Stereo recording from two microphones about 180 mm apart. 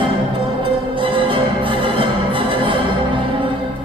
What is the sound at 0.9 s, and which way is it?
Music, 30° right (ahead or behind).